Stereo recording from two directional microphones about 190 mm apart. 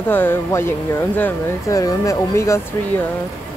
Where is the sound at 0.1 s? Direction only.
10° left (ahead or behind).